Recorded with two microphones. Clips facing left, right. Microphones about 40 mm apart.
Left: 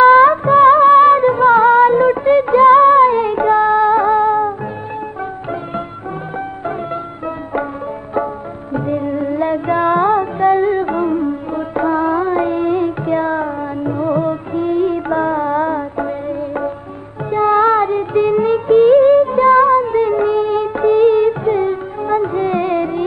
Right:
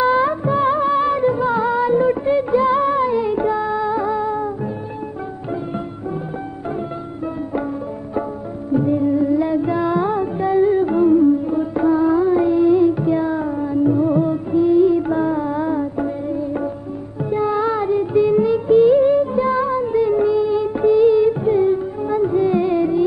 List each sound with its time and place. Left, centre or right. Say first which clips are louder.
0.0 s music of bollywood: left 9 dB; left
8.7 s music: right 2 dB; left